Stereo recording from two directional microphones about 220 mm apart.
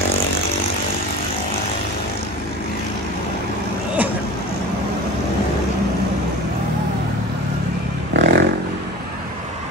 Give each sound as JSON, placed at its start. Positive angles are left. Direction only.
{"t": 8.1, "sound": "vehicle", "side_deg": -50}